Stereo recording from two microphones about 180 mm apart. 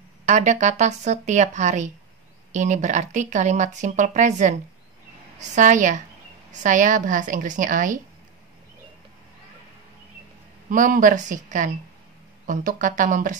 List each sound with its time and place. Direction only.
0.2 s speech: 40° right (ahead or behind)
10.7 s speech: 50° right (ahead or behind)